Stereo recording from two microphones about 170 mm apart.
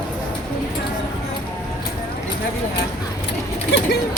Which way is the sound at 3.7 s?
90° left.